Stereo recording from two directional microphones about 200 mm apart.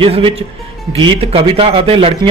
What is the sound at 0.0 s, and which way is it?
Speech, 25° right (ahead or behind).